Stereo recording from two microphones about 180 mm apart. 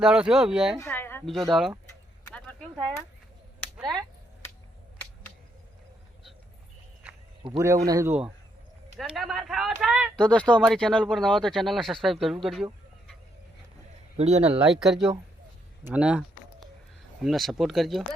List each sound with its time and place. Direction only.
0.0 s speech: 5° right (ahead or behind)
0.8 s a sound: 10° left (ahead or behind)
1.2 s speech: centre (ahead or behind)
2.3 s a sound: 5° left (ahead or behind)
7.4 s a man's voice: 25° right (ahead or behind)
7.9 s a man's voice: 15° right (ahead or behind)
9.1 s speech: centre (ahead or behind)
14.2 s speech: 35° right (ahead or behind)
14.7 s speech: centre (ahead or behind)
15.8 s a sound: 10° right (ahead or behind)
17.2 s speech: centre (ahead or behind)